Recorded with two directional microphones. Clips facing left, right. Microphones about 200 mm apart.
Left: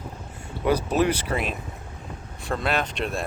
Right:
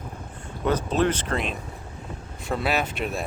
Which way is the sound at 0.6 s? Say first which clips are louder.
Left 1 dB; 10° left (ahead or behind).